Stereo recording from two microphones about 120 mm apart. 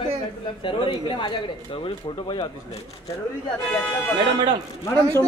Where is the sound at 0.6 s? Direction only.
45° left (ahead or behind).